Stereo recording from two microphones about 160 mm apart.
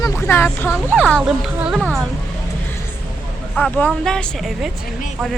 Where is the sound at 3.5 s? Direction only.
5° left (ahead or behind).